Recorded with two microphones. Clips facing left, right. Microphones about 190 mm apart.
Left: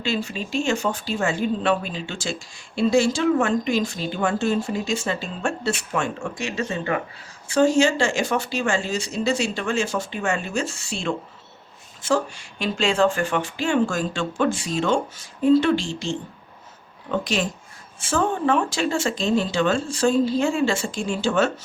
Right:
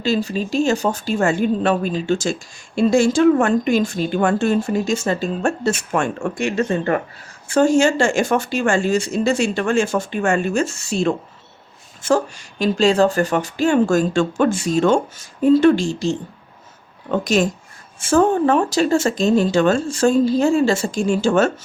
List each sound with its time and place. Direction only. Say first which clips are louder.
0.0 s speech: right 6 dB; 40° right (ahead or behind)